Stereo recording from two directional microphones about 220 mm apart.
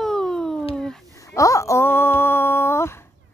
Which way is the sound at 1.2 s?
15° left (ahead or behind).